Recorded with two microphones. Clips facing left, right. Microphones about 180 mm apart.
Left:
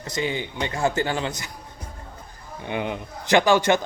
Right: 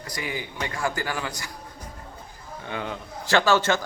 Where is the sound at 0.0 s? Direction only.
25° left (ahead or behind).